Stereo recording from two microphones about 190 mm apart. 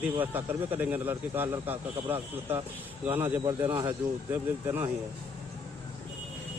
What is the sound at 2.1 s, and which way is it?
Speech, 30° right (ahead or behind).